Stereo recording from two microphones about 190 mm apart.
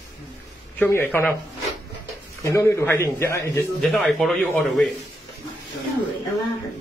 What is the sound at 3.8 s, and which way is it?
A man's voice, centre (ahead or behind).